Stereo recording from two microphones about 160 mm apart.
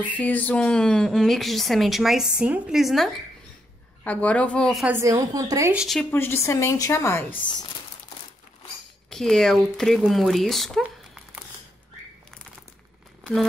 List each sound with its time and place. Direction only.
0.1 s a woman's voice: 10° left (ahead or behind)
4.0 s a woman's voice: 10° left (ahead or behind)
4.8 s a woman's voice: 15° right (ahead or behind)
5.8 s a woman's voice: centre (ahead or behind)
6.1 s a woman's voice: 15° left (ahead or behind)
9.1 s a woman's voice: 5° left (ahead or behind)
13.2 s a sound: centre (ahead or behind)